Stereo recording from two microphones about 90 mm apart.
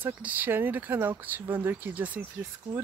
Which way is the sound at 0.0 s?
20° right (ahead or behind).